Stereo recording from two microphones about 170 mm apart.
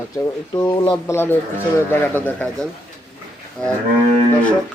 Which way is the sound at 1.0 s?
15° left (ahead or behind).